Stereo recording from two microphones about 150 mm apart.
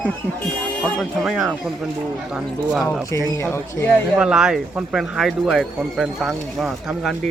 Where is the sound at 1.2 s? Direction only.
Centre (ahead or behind).